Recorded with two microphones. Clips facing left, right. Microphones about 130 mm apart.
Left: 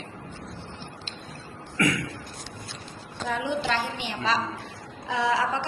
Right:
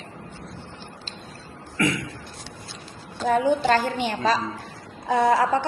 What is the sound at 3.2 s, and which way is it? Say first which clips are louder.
A woman's voice: right 8 dB; 45° right (ahead or behind).